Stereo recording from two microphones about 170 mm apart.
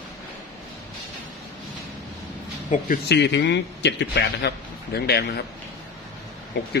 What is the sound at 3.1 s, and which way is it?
A man's voice, 90° left.